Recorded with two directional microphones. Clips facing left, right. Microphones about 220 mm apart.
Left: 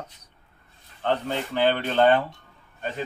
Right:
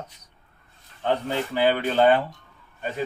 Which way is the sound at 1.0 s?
10° right (ahead or behind).